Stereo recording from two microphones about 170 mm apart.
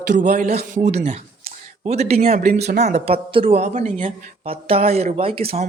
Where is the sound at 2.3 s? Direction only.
55° right (ahead or behind).